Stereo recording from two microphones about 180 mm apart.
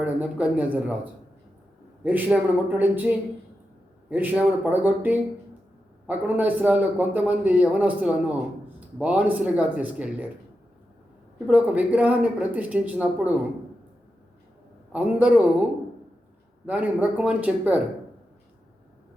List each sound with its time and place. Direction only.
0.0 s a man's voice: 10° right (ahead or behind)
2.0 s a man's voice: 10° right (ahead or behind)
11.4 s a man's voice: 10° right (ahead or behind)
14.9 s a man's voice: 10° right (ahead or behind)
16.6 s a man's voice: 10° right (ahead or behind)